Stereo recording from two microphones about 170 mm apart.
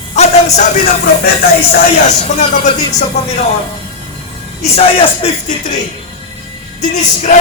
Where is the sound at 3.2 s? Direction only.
40° left (ahead or behind).